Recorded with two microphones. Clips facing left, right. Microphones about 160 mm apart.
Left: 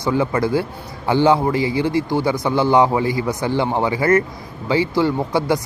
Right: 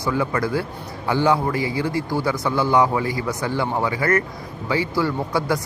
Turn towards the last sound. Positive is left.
turn(degrees=25)  # may be behind; listen again after turning